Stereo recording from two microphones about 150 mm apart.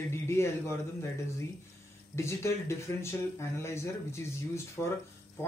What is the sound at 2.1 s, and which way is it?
Speech, 20° left (ahead or behind).